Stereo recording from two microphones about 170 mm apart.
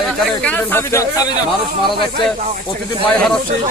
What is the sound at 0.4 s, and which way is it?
Speech, 10° left (ahead or behind).